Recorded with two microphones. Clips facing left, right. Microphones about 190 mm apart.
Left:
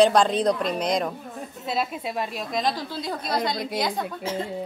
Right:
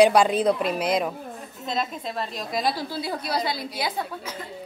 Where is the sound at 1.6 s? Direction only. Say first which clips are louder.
Left 1 dB; 5° left (ahead or behind).